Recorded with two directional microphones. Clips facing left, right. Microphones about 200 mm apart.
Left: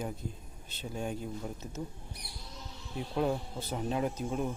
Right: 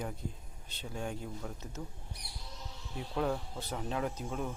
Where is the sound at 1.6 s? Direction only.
20° left (ahead or behind).